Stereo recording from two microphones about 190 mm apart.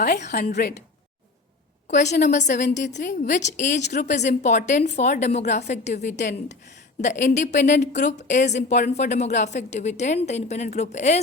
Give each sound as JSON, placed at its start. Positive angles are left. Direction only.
{"t": 0.3, "sound": "a woman's voice", "side_deg": 50}
{"t": 1.9, "sound": "a woman's voice", "side_deg": 40}